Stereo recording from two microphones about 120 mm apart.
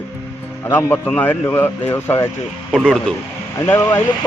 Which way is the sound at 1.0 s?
15° left (ahead or behind).